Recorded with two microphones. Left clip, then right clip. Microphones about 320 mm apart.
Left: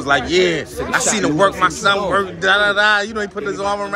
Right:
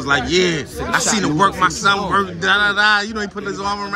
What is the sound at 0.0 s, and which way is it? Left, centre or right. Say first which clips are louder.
A man's voice: left 1 dB; centre.